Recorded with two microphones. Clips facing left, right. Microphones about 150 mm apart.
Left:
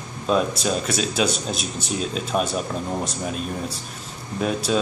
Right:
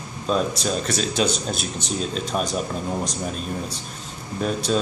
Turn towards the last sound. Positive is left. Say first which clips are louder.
# left 1 dB
turn(degrees=5)  # may be behind; listen again after turning